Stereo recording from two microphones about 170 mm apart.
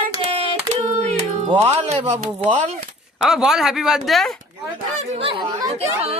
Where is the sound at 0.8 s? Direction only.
40° right (ahead or behind).